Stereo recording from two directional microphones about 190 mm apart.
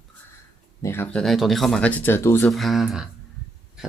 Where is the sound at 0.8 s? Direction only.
10° left (ahead or behind).